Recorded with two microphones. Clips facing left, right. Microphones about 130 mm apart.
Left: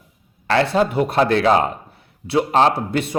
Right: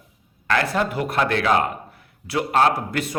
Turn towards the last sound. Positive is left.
turn(degrees=25)  # may be behind; listen again after turning